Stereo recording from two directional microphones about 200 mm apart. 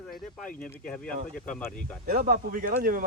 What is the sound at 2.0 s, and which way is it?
Speech, 45° right (ahead or behind).